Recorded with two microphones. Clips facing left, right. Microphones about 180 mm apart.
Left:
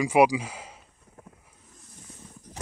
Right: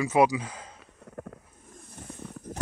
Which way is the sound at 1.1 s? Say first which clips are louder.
Right 11 dB; 70° right (ahead or behind).